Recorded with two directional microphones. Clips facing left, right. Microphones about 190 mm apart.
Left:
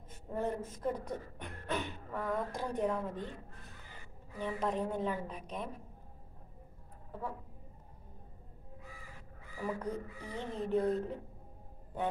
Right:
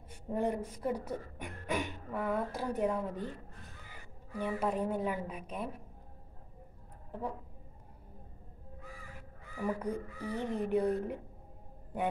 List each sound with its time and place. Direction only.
0.1 s speech: 15° right (ahead or behind)
4.4 s speech: 10° right (ahead or behind)
7.1 s speech: 15° right (ahead or behind)
9.6 s speech: 10° right (ahead or behind)